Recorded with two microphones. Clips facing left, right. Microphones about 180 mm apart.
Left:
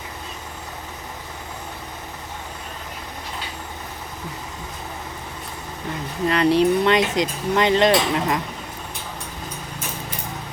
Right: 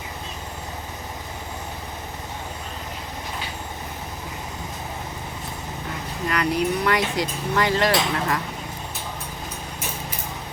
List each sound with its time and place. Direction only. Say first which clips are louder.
6.2 s speech: left 6 dB; 30° left (ahead or behind)